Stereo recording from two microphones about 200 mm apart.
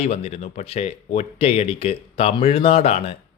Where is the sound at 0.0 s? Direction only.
30° left (ahead or behind).